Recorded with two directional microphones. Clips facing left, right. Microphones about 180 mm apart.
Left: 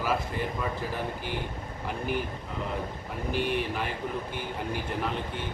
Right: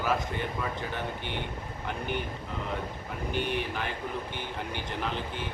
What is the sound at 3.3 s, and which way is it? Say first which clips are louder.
Speech: left 2 dB; centre (ahead or behind).